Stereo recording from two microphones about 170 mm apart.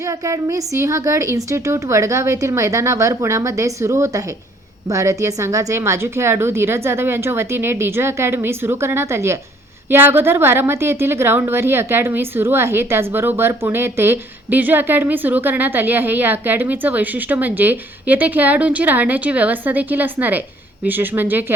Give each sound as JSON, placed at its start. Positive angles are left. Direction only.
{"t": 0.0, "sound": "a woman's voice", "side_deg": -15}